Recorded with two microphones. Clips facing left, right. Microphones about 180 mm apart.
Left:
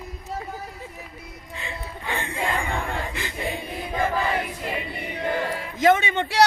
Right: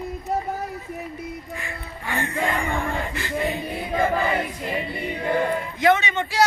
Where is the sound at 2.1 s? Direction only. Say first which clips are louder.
Right 3 dB; 15° left (ahead or behind).